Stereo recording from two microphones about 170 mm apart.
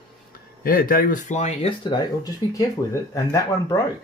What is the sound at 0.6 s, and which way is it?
Speech, 55° left (ahead or behind).